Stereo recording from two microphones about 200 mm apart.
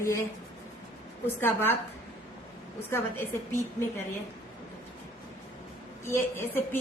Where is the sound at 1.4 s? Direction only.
10° left (ahead or behind).